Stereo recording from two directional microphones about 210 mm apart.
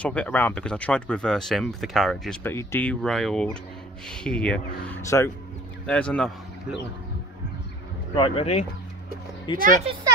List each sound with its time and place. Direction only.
0.0 s speech: 5° left (ahead or behind)
8.1 s speech: 25° left (ahead or behind)